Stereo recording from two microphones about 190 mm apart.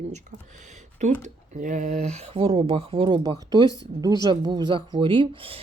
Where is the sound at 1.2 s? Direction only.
40° right (ahead or behind).